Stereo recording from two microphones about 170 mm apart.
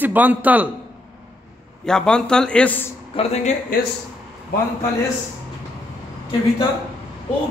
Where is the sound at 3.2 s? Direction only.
40° left (ahead or behind).